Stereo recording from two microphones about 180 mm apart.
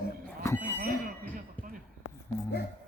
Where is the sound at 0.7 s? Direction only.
50° right (ahead or behind).